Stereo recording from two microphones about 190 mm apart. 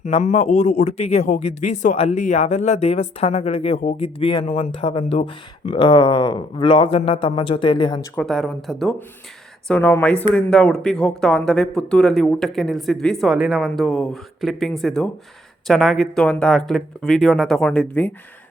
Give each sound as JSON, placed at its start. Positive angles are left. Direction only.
{"t": 0.0, "sound": "a man's voice", "side_deg": 40}
{"t": 8.1, "sound": "speech", "side_deg": 5}